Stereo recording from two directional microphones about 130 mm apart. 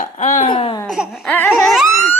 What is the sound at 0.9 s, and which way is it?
Laughter, 5° right (ahead or behind).